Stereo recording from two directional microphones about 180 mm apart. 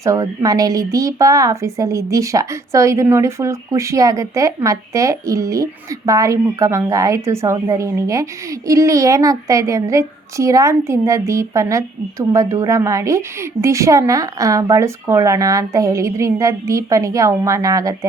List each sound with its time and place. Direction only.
0.0 s a woman's voice: 15° right (ahead or behind)